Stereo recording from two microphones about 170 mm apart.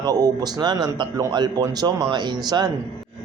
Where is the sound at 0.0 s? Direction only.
25° right (ahead or behind).